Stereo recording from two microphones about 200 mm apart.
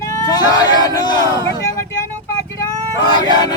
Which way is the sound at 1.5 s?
15° left (ahead or behind).